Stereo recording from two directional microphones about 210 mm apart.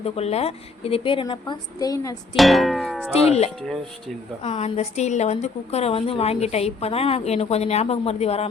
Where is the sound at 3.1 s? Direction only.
30° left (ahead or behind).